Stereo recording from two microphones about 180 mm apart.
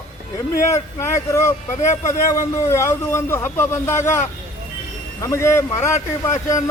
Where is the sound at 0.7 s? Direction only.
15° left (ahead or behind).